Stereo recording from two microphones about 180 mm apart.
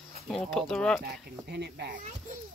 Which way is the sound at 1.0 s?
65° right (ahead or behind).